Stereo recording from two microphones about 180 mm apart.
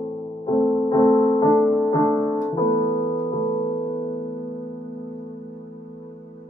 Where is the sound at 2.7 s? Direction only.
30° left (ahead or behind).